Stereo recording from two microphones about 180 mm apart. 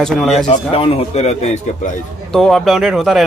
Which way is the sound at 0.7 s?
35° left (ahead or behind).